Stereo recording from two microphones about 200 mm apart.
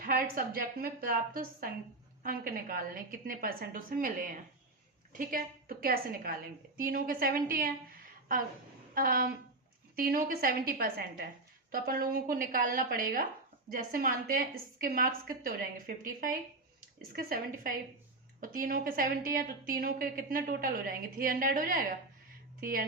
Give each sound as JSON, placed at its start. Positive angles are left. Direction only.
{"t": 0.0, "sound": "a woman's voice", "side_deg": -50}
{"t": 9.0, "sound": "a woman's voice", "side_deg": -45}